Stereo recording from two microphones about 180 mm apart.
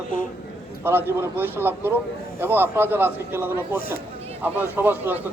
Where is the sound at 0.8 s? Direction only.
10° right (ahead or behind).